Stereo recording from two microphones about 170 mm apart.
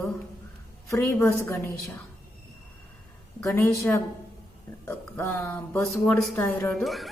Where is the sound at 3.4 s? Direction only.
15° left (ahead or behind).